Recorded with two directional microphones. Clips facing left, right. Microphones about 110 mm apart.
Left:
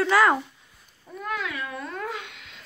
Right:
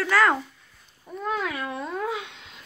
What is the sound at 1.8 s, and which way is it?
Speech, 10° right (ahead or behind).